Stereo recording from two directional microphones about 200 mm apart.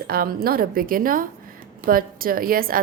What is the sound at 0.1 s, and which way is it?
A woman's voice, 50° right (ahead or behind).